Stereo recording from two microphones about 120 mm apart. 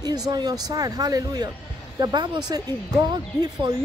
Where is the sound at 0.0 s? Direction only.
35° right (ahead or behind).